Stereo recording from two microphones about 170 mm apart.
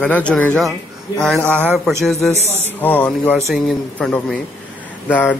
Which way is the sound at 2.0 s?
Centre (ahead or behind).